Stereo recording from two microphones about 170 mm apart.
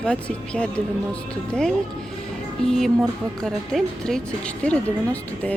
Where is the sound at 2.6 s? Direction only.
Centre (ahead or behind).